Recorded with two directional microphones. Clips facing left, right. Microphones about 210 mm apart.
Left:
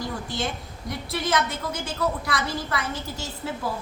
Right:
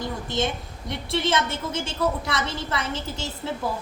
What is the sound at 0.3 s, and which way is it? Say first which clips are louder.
A woman's voice: right 4 dB; 25° right (ahead or behind).